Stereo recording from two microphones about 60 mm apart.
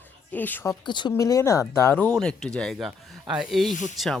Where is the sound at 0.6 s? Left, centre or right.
Left.